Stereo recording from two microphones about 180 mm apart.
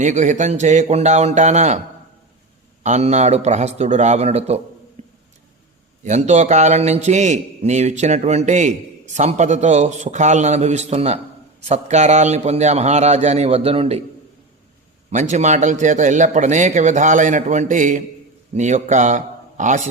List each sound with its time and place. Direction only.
0.0 s a man's voice: 45° right (ahead or behind)
2.8 s a man's voice: 40° right (ahead or behind)
5.0 s a sound: 40° right (ahead or behind)
6.1 s a man's voice: 40° right (ahead or behind)
15.1 s a man's voice: 40° right (ahead or behind)